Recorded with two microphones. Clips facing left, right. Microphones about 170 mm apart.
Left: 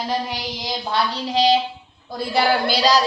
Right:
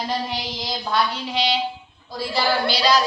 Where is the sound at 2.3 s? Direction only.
45° left (ahead or behind).